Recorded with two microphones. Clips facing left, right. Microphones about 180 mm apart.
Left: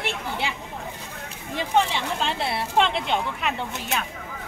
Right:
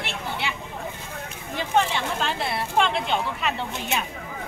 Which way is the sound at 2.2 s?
25° left (ahead or behind).